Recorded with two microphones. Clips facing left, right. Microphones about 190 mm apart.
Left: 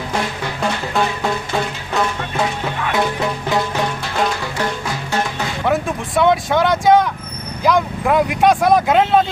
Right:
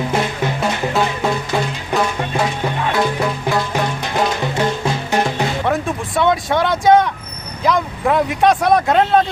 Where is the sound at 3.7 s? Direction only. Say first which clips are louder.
Right 1 dB; 20° right (ahead or behind).